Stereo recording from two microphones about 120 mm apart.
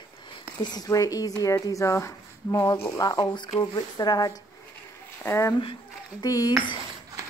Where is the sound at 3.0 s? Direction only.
35° left (ahead or behind).